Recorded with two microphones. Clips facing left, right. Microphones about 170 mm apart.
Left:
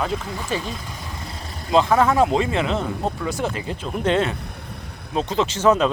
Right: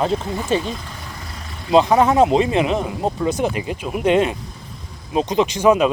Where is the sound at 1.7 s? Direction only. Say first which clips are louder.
Right 3 dB; 20° right (ahead or behind).